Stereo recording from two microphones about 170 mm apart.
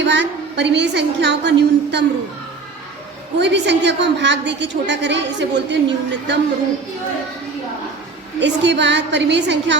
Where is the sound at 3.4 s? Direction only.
90° right.